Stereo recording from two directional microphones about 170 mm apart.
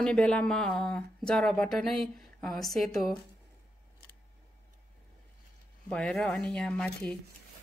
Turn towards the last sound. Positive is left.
turn(degrees=5)  # may be behind; listen again after turning